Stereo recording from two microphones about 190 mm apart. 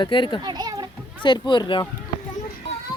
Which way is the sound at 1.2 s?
25° left (ahead or behind).